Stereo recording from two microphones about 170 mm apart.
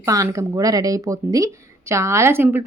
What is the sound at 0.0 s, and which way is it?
A woman's voice, 20° right (ahead or behind).